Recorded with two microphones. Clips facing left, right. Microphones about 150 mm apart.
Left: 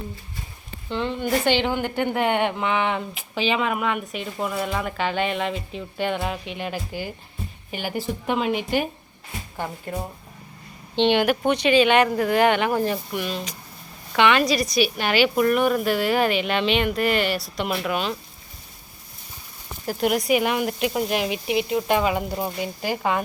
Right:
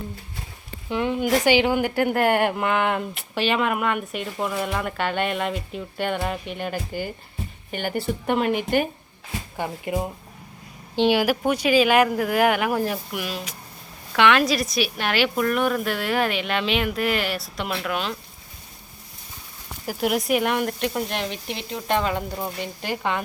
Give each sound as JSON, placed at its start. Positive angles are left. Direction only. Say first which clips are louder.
{"t": 0.9, "sound": "speech", "louder": "right 2 dB", "side_deg": -10}
{"t": 19.9, "sound": "speech", "louder": "left 1 dB", "side_deg": -5}